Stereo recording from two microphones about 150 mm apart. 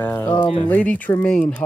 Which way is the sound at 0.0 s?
15° left (ahead or behind).